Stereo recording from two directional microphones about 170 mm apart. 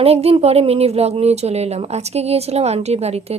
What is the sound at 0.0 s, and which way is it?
Speech, 35° right (ahead or behind).